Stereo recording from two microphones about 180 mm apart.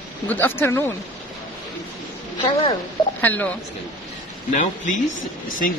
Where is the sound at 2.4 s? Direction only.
30° left (ahead or behind).